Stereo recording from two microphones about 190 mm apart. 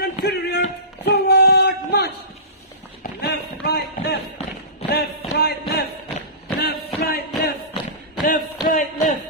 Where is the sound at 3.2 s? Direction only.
55° left (ahead or behind).